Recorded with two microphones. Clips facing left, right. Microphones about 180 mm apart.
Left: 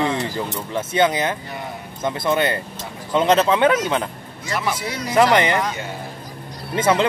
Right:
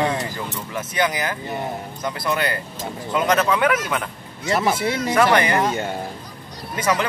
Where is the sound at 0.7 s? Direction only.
25° left (ahead or behind).